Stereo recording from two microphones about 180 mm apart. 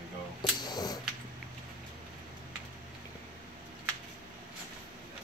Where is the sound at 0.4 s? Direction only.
20° left (ahead or behind).